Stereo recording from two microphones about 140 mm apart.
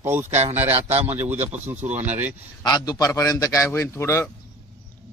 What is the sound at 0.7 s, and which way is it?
Speech, 50° right (ahead or behind).